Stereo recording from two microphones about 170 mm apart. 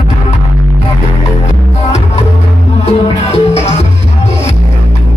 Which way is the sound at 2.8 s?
40° left (ahead or behind).